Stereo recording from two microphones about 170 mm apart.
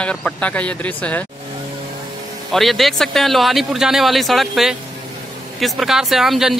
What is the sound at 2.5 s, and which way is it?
Speech, centre (ahead or behind).